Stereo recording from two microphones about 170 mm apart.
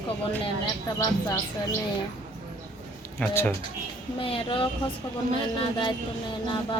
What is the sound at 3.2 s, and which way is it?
Speech, 15° left (ahead or behind).